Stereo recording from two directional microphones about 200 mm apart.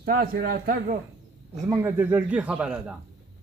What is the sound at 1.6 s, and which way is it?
A man's voice, 15° right (ahead or behind).